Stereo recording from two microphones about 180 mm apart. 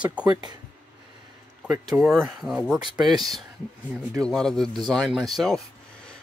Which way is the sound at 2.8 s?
25° right (ahead or behind).